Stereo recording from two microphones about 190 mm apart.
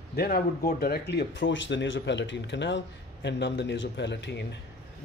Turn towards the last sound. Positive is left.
turn(degrees=65)  # may be behind; listen again after turning